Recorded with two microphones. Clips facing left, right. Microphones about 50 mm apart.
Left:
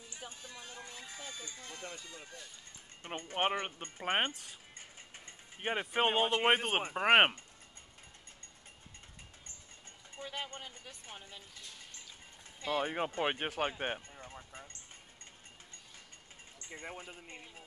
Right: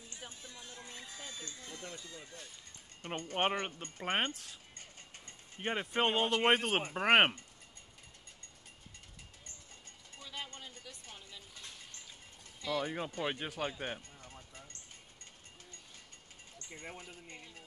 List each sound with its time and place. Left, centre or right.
0.2 s a sound: left
1.6 s speech: left
3.2 s speech: centre
10.1 s speech: left
12.6 s speech: left
16.7 s speech: left